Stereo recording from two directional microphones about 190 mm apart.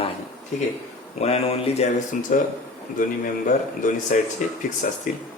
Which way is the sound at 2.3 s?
45° left (ahead or behind).